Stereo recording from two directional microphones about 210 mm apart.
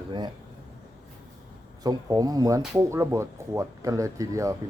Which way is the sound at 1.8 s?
15° right (ahead or behind).